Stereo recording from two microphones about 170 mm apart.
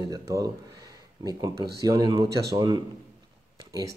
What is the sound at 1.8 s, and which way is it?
Speech, 20° right (ahead or behind).